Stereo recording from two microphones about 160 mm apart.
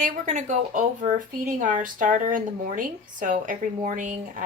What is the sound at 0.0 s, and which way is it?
Speech, 50° right (ahead or behind).